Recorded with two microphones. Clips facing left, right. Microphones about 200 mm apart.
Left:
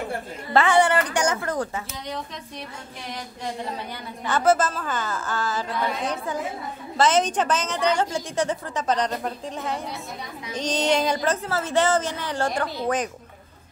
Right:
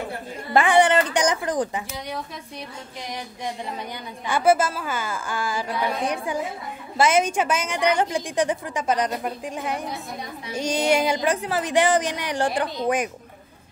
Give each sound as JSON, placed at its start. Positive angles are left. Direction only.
{"t": 0.5, "sound": "a woman's voice", "side_deg": -15}
{"t": 4.3, "sound": "a woman's voice", "side_deg": -10}